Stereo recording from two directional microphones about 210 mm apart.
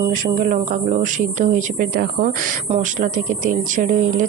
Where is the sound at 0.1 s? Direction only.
40° right (ahead or behind).